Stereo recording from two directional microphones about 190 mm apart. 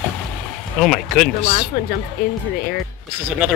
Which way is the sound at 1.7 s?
50° left (ahead or behind).